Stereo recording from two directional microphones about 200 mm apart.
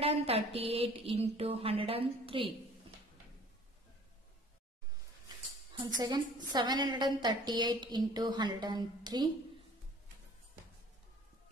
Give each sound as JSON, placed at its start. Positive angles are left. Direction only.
{"t": 0.0, "sound": "a woman's voice", "side_deg": -30}
{"t": 5.9, "sound": "a woman's voice", "side_deg": -20}